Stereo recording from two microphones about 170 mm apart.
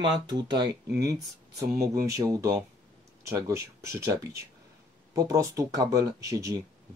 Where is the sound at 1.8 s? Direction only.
20° right (ahead or behind).